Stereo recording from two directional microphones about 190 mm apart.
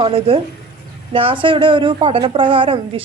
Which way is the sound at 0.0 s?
30° right (ahead or behind).